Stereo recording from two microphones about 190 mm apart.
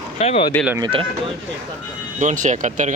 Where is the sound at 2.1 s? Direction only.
40° right (ahead or behind).